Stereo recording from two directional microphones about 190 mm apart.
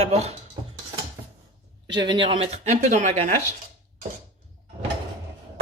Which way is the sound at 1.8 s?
25° right (ahead or behind).